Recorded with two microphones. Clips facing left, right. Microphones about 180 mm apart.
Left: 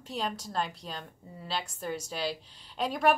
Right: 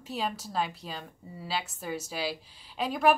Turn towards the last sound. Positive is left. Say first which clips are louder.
# right 1 dB
turn(degrees=0)  # may be behind; listen again after turning